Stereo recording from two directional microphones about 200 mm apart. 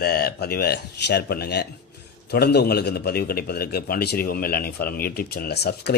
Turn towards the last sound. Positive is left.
turn(degrees=55)  # may be behind; listen again after turning